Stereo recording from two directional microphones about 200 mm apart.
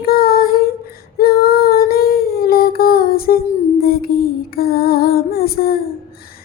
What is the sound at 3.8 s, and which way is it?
Lullaby, 50° left (ahead or behind).